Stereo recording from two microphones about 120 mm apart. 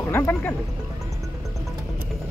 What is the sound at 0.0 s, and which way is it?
Speech, 20° left (ahead or behind).